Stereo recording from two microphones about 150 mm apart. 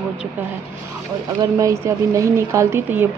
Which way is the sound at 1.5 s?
20° right (ahead or behind).